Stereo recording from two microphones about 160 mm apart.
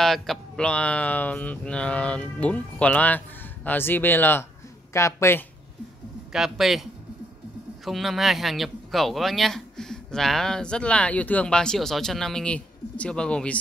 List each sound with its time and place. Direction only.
0.0 s speech: centre (ahead or behind); by 5.4 s 20° left (ahead or behind)
6.3 s speech: centre (ahead or behind)